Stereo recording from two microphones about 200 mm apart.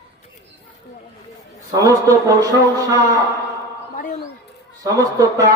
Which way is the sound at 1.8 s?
15° right (ahead or behind).